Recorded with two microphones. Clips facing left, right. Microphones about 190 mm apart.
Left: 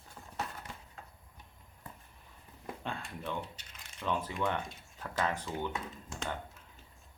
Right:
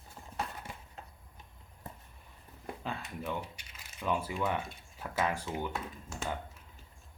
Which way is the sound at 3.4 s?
10° right (ahead or behind).